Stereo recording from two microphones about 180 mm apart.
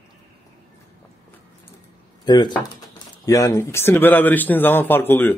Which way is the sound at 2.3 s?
25° left (ahead or behind).